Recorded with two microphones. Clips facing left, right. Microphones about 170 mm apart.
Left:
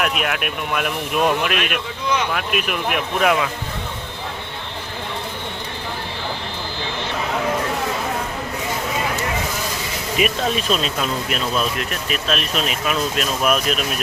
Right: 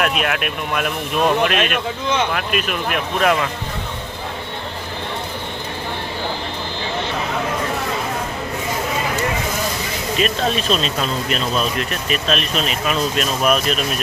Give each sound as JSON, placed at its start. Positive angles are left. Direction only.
{"t": 0.0, "sound": "speech", "side_deg": 5}
{"t": 10.2, "sound": "speech", "side_deg": 10}